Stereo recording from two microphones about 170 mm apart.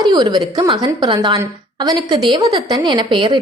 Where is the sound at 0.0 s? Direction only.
25° right (ahead or behind).